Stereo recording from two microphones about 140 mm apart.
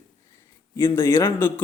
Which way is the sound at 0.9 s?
15° left (ahead or behind).